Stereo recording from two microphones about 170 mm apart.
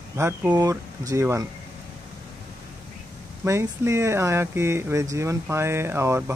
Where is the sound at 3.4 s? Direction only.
15° right (ahead or behind).